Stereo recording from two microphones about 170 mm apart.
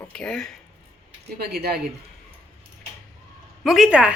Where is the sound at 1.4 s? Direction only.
70° right (ahead or behind).